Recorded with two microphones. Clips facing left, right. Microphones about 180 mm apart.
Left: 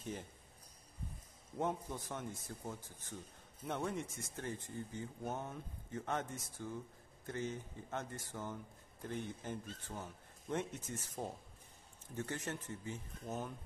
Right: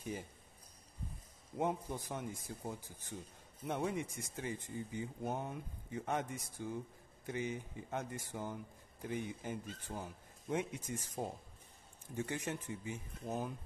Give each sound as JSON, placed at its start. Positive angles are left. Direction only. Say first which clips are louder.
{"t": 0.0, "sound": "speech", "louder": "right 2 dB", "side_deg": -5}
{"t": 1.6, "sound": "speech", "louder": "right 2 dB", "side_deg": -15}